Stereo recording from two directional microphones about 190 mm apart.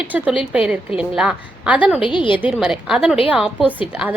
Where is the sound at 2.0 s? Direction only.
25° left (ahead or behind).